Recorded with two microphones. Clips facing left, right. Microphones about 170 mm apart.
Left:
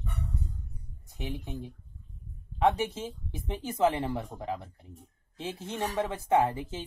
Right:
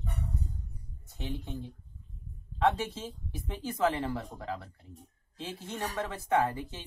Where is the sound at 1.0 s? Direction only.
15° left (ahead or behind).